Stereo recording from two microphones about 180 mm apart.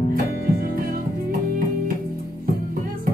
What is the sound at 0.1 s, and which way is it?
Music, 55° right (ahead or behind).